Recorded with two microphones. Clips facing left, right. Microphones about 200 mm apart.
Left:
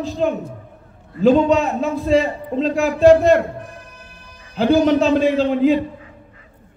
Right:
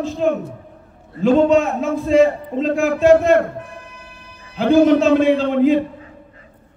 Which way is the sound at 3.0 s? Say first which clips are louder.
Left 2 dB; 35° left (ahead or behind).